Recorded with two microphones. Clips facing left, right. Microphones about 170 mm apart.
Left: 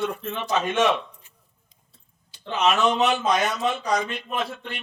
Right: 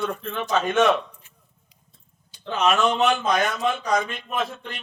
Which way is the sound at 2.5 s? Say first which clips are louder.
Even; centre (ahead or behind).